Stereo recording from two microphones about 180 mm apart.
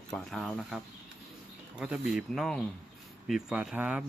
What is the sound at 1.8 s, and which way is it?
Speech, 5° right (ahead or behind).